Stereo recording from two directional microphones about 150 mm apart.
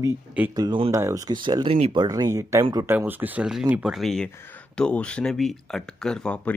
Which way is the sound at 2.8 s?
10° right (ahead or behind).